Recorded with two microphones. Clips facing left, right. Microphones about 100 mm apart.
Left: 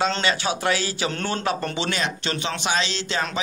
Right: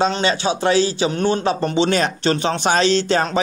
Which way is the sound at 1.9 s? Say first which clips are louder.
Right 8 dB; 40° right (ahead or behind).